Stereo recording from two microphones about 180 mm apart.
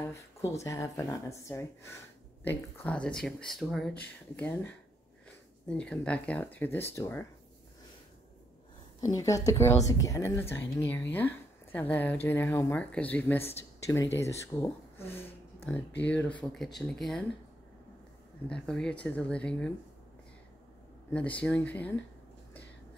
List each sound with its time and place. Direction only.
0.0 s speech: 15° left (ahead or behind)
9.1 s a woman's voice: 20° left (ahead or behind); by 17.2 s centre (ahead or behind)
18.5 s speech: 5° left (ahead or behind)
21.1 s speech: 5° left (ahead or behind)